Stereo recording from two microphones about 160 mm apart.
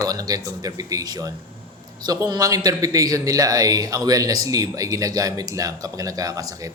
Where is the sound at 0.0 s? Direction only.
25° right (ahead or behind).